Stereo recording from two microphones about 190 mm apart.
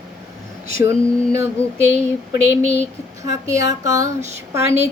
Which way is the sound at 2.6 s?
30° left (ahead or behind).